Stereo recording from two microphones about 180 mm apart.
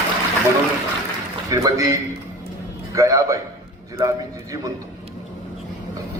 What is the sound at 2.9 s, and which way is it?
A man's voice, 15° right (ahead or behind).